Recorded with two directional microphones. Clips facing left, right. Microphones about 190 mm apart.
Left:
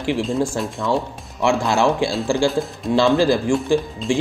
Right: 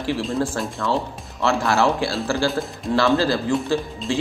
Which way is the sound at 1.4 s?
15° left (ahead or behind).